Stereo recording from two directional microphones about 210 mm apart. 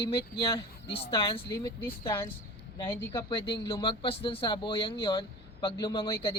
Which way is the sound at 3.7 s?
25° left (ahead or behind).